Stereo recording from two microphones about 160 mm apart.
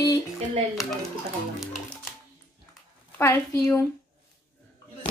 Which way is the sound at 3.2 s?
15° left (ahead or behind).